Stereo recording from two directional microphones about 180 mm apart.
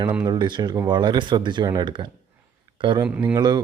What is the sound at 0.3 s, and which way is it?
Speech, 25° right (ahead or behind).